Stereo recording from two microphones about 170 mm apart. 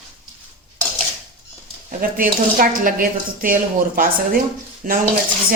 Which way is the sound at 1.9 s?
55° right (ahead or behind).